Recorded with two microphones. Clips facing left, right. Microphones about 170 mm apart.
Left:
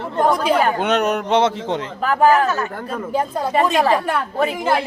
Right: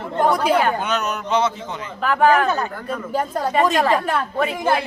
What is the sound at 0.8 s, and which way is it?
Speech, 90° left.